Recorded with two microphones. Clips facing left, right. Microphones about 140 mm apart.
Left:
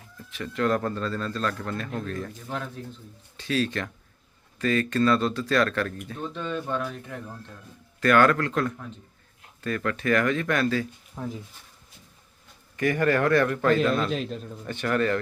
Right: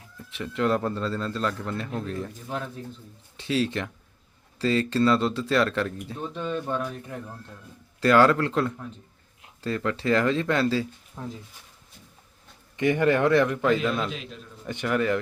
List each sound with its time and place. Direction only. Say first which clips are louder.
0.3 s speech: even; 20° right (ahead or behind)
3.3 s speech: right 1 dB; 25° right (ahead or behind); by 7.3 s 5° right (ahead or behind)
8.0 s speech: right 1 dB; 25° right (ahead or behind)
11.2 s speech: left 3 dB; centre (ahead or behind)
12.7 s speech: right 1 dB; 20° right (ahead or behind)
14.1 s a man's voice: left 8 dB; 40° left (ahead or behind)
14.7 s speech: even; 15° right (ahead or behind)